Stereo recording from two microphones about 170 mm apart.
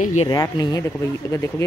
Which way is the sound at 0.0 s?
45° left (ahead or behind).